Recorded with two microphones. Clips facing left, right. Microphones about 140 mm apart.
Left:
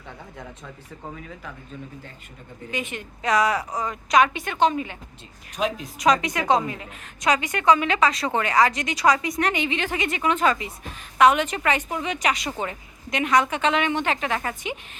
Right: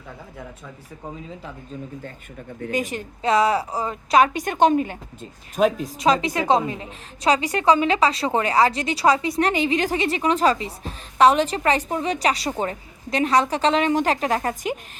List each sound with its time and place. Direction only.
1.1 s speech: 25° right (ahead or behind)
2.6 s a woman's voice: 40° right (ahead or behind)
6.0 s a woman's voice: 30° right (ahead or behind)